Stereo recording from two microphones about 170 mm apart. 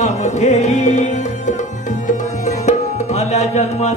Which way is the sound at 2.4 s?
40° left (ahead or behind).